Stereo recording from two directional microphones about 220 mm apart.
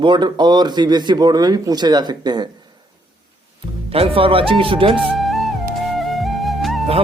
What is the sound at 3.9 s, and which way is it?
Speech, 25° right (ahead or behind).